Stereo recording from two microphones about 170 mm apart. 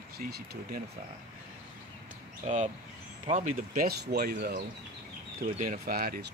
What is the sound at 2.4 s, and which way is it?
Speech, 45° right (ahead or behind).